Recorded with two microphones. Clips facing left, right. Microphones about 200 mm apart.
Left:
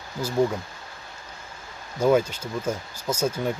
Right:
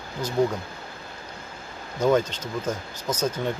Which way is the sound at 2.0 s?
10° left (ahead or behind).